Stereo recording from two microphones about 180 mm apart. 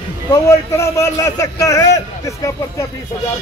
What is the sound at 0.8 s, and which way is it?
Speech, 15° left (ahead or behind).